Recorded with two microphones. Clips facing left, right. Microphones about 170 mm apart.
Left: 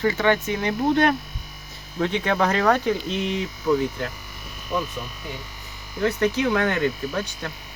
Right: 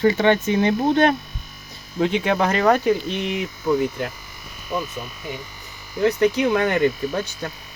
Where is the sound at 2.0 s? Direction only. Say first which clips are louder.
Right 2 dB; 10° right (ahead or behind).